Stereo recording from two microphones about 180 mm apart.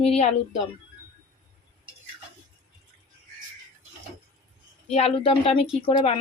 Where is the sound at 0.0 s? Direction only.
35° left (ahead or behind).